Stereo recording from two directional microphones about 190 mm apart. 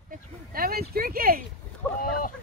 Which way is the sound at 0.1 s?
50° right (ahead or behind).